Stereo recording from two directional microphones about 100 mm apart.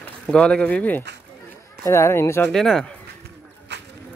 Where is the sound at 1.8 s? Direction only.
25° left (ahead or behind).